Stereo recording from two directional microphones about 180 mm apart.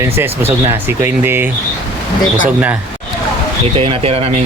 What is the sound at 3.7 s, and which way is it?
Speech, 30° right (ahead or behind).